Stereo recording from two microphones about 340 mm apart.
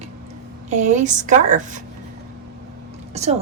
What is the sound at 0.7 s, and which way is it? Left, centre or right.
A woman's voice, right.